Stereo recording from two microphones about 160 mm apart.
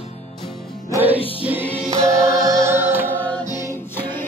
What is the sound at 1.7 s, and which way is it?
Choir, 40° right (ahead or behind).